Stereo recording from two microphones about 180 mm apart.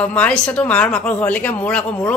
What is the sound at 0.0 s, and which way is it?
Speech, 5° left (ahead or behind).